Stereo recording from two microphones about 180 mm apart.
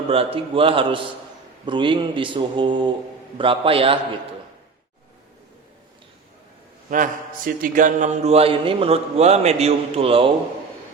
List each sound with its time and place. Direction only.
0.1 s mantra: 30° right (ahead or behind)
1.6 s a man's voice: 25° right (ahead or behind)
6.9 s mantra: 50° right (ahead or behind); by 10.3 s 30° right (ahead or behind)